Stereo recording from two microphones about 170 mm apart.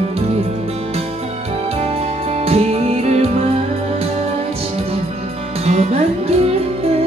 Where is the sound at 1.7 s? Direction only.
35° right (ahead or behind).